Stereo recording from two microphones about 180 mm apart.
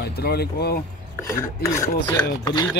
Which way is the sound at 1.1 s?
15° left (ahead or behind).